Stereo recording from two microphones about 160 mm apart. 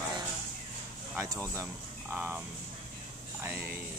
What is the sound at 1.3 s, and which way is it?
Speech, 20° right (ahead or behind).